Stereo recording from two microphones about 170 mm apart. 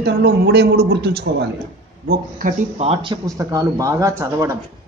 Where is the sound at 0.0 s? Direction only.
75° right (ahead or behind).